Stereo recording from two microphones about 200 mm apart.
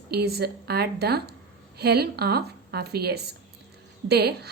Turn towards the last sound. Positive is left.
turn(degrees=-55)  # may be behind; listen again after turning